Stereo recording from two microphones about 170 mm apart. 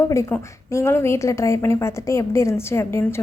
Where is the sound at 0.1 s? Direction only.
20° left (ahead or behind).